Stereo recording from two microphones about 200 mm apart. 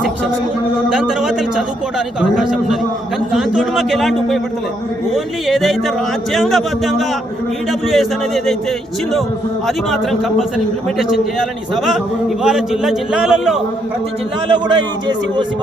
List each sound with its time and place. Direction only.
0.9 s a man's voice: 5° right (ahead or behind)
9.6 s a man's voice: centre (ahead or behind)
12.4 s a man's voice: 5° right (ahead or behind)
14.5 s a man's voice: 25° right (ahead or behind)